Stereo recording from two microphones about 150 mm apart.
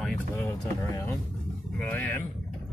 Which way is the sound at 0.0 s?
15° left (ahead or behind).